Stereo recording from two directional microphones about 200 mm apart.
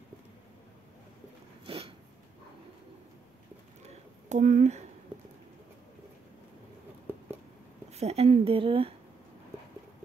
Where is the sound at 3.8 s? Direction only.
35° right (ahead or behind).